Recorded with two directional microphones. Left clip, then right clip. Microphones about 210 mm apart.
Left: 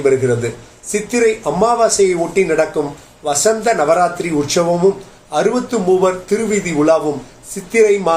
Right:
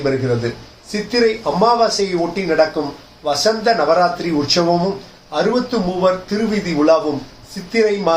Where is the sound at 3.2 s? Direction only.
45° left (ahead or behind).